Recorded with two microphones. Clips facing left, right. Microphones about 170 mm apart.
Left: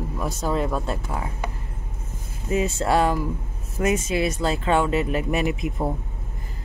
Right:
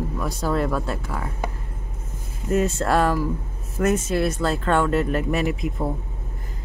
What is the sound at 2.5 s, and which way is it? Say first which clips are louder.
Speech: right 1 dB; centre (ahead or behind).